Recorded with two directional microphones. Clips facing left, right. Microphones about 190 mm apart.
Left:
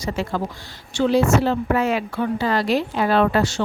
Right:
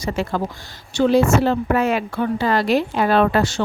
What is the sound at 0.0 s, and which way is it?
Speech, 55° right (ahead or behind).